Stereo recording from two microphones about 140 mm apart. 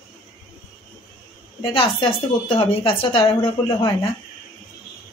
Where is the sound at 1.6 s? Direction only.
40° left (ahead or behind).